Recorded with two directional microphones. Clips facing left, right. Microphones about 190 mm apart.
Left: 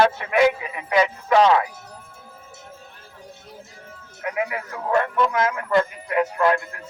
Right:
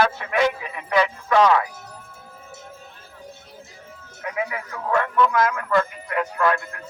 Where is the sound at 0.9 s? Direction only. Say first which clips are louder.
Left 1 dB; 20° left (ahead or behind).